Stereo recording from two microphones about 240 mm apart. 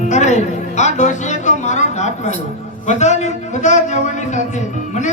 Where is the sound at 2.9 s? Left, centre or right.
Left.